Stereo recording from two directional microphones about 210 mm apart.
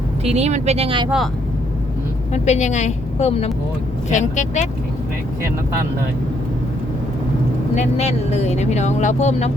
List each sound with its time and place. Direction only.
0.3 s speech: 30° right (ahead or behind)
2.3 s speech: 35° left (ahead or behind)
7.8 s speech: 30° left (ahead or behind)